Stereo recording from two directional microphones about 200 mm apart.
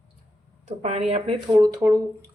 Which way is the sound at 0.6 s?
35° right (ahead or behind).